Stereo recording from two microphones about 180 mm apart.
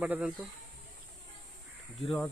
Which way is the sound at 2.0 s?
Centre (ahead or behind).